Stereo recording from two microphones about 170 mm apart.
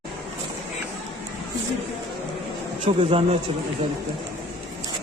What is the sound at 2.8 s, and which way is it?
Speech, 35° right (ahead or behind).